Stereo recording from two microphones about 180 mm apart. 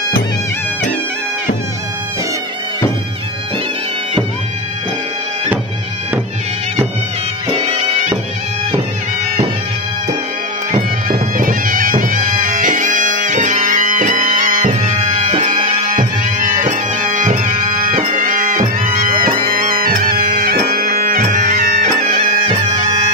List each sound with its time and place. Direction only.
7.5 s bagpipes: 35° right (ahead or behind)
10.7 s bagpipes: 50° right (ahead or behind)
15.2 s music: 30° right (ahead or behind)
16.0 s music: 45° right (ahead or behind)
19.5 s bagpipes: 55° right (ahead or behind)